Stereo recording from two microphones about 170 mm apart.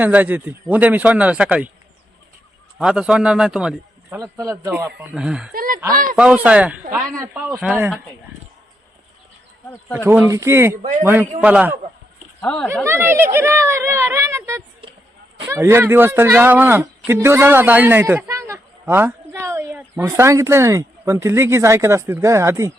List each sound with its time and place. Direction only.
0.0 s speech: 10° right (ahead or behind)
2.7 s a man's voice: 5° right (ahead or behind)
4.2 s a man's voice: 20° right (ahead or behind)
4.5 s speech: 10° right (ahead or behind)
5.5 s speech: 55° right (ahead or behind)
6.1 s speech: 5° right (ahead or behind)
10.1 s speech: 15° right (ahead or behind)
12.4 s speech: 10° left (ahead or behind)
12.8 s speech: 15° right (ahead or behind)